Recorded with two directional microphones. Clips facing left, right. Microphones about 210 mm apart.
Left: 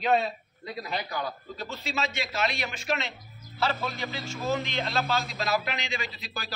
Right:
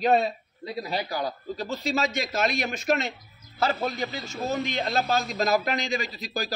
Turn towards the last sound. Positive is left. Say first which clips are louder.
# right 6 dB
turn(degrees=-40)  # may be behind; listen again after turning